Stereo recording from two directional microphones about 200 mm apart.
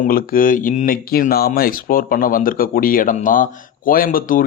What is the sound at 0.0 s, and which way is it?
Speech, 45° left (ahead or behind).